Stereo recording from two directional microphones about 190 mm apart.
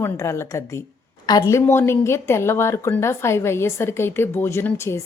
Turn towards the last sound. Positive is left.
turn(degrees=15)  # may be behind; listen again after turning